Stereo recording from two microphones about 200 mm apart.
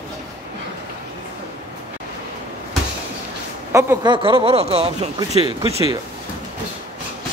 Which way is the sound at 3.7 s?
20° right (ahead or behind).